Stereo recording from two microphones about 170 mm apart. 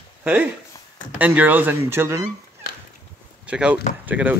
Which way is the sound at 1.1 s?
10° right (ahead or behind).